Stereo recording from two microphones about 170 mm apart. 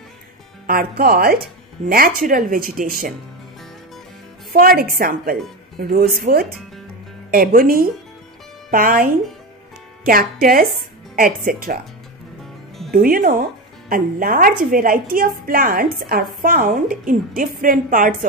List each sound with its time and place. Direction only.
0.7 s speech: 60° right (ahead or behind)
4.5 s speech: 60° right (ahead or behind)
12.9 s speech: 55° right (ahead or behind)